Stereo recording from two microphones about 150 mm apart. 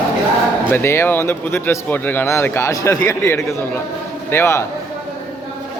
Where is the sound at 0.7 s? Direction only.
15° left (ahead or behind).